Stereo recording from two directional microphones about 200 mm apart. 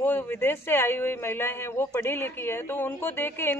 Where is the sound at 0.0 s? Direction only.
10° left (ahead or behind).